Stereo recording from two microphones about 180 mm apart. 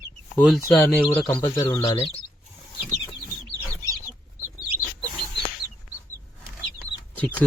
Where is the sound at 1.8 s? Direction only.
30° left (ahead or behind).